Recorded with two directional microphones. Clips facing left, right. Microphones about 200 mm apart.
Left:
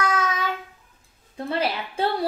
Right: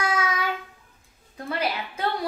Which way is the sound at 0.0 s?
10° right (ahead or behind).